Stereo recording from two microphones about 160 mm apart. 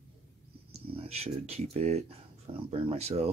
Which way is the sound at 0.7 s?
40° right (ahead or behind).